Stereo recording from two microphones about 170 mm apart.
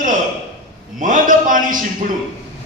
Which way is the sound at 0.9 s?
50° right (ahead or behind).